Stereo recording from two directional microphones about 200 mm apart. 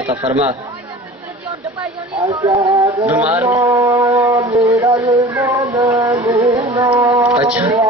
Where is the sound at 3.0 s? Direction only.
10° right (ahead or behind).